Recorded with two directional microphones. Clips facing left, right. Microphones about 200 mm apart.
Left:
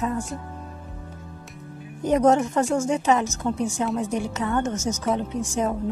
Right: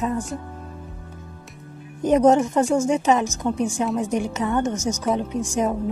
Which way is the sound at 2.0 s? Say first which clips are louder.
Right 3 dB; 20° right (ahead or behind).